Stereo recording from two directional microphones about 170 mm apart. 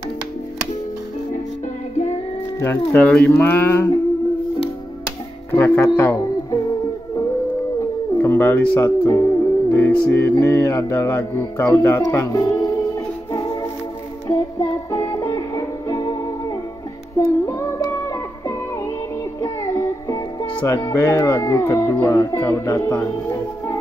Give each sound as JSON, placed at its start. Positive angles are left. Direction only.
{"t": 2.9, "sound": "speech", "side_deg": 10}
{"t": 5.5, "sound": "speech", "side_deg": 15}
{"t": 8.2, "sound": "speech", "side_deg": 10}
{"t": 13.3, "sound": "music", "side_deg": 20}
{"t": 17.5, "sound": "music", "side_deg": 20}
{"t": 19.4, "sound": "music", "side_deg": 20}
{"t": 20.6, "sound": "speech", "side_deg": 15}